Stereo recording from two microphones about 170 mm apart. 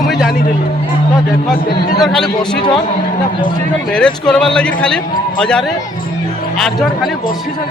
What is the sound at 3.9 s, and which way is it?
A man's voice, 5° left (ahead or behind).